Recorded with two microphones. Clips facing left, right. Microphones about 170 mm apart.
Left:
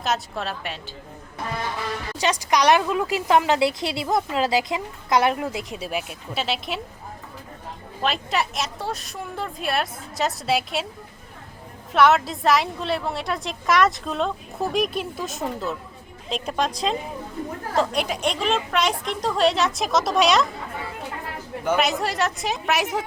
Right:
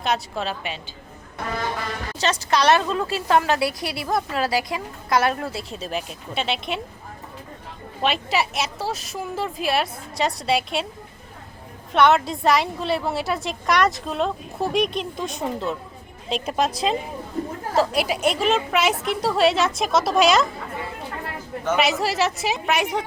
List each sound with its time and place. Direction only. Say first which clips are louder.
0.0 s a woman's voice: right 1 dB; centre (ahead or behind)
2.1 s a woman's voice: even; 15° left (ahead or behind)
8.0 s a woman's voice: right 2 dB; centre (ahead or behind)
11.9 s a woman's voice: even; centre (ahead or behind)
21.8 s a woman's voice: right 4 dB; centre (ahead or behind)